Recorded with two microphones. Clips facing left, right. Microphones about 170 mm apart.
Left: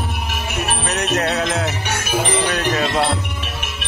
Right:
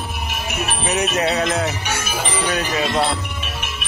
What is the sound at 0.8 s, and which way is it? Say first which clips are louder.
Music: right 2 dB; 5° right (ahead or behind).